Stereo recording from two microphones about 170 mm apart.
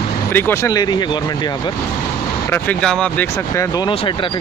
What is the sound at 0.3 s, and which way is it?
Speech, 15° left (ahead or behind).